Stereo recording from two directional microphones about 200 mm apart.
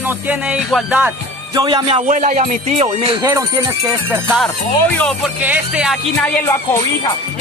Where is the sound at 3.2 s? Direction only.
15° right (ahead or behind).